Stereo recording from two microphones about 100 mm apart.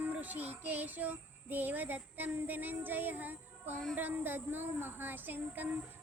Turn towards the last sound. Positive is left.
turn(degrees=-20)  # may be behind; listen again after turning